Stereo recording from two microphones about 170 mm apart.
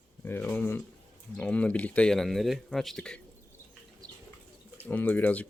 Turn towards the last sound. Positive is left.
turn(degrees=10)  # may be behind; listen again after turning